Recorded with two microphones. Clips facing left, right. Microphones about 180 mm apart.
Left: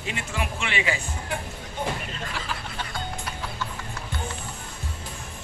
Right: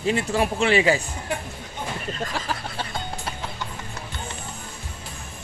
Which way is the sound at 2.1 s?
40° right (ahead or behind).